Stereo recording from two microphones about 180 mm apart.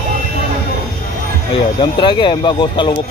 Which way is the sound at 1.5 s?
25° left (ahead or behind).